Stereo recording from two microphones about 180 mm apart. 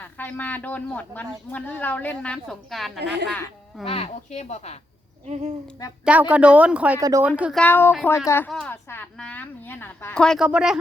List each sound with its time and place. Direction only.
0.0 s speech: 10° left (ahead or behind)
3.8 s speech: 30° left (ahead or behind)
5.2 s speech: 40° right (ahead or behind)
6.1 s speech: 10° right (ahead or behind)
7.0 s speech: 20° right (ahead or behind)
7.3 s speech: 5° right (ahead or behind)
7.6 s a woman's voice: 10° left (ahead or behind); by 10.8 s 5° right (ahead or behind)